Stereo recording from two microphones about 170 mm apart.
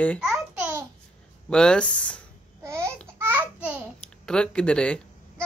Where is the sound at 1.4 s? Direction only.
5° left (ahead or behind).